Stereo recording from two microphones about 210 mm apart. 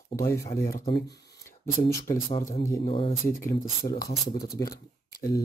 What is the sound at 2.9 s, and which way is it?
Speech, 25° left (ahead or behind).